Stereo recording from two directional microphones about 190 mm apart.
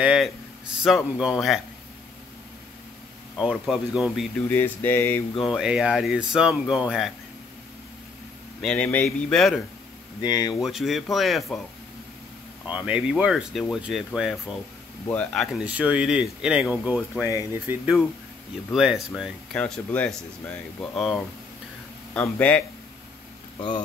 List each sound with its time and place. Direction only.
0.0 s speech: 5° right (ahead or behind)
3.3 s speech: centre (ahead or behind)
4.5 s a sound: 10° left (ahead or behind)
5.4 s speech: centre (ahead or behind)
8.5 s speech: 5° left (ahead or behind)
10.2 s speech: 20° left (ahead or behind)
10.6 s speech: centre (ahead or behind)
12.6 s speech: 5° right (ahead or behind)
22.1 s a sound: 10° left (ahead or behind)